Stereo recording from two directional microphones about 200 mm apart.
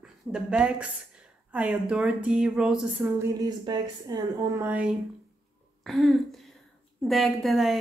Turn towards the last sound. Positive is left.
turn(degrees=0)  # may be behind; listen again after turning